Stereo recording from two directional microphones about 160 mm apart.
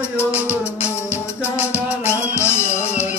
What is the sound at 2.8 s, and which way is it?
Music, 45° left (ahead or behind).